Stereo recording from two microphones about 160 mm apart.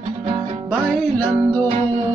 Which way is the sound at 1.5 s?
30° right (ahead or behind).